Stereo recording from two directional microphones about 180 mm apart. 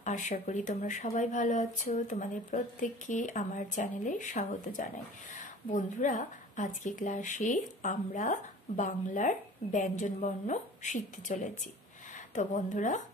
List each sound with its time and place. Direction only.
0.0 s speech: 40° left (ahead or behind)